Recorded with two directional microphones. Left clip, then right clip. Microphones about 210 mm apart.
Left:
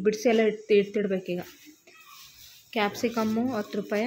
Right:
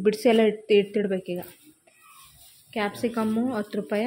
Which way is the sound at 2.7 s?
Centre (ahead or behind).